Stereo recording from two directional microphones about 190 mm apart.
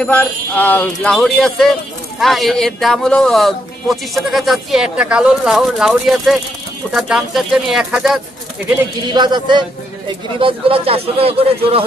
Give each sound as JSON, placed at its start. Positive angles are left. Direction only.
{"t": 0.0, "sound": "speech", "side_deg": 10}
{"t": 9.1, "sound": "speech", "side_deg": -25}